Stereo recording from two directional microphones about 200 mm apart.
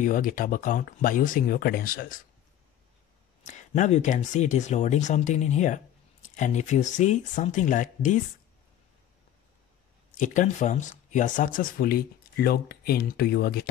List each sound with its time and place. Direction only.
0.0 s speech: 40° left (ahead or behind)
3.4 s speech: 35° left (ahead or behind)
10.1 s speech: 40° left (ahead or behind)